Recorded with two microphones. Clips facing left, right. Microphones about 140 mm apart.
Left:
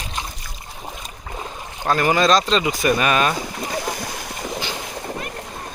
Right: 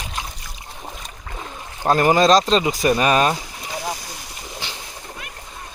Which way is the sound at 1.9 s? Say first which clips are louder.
Right 2 dB; 35° right (ahead or behind).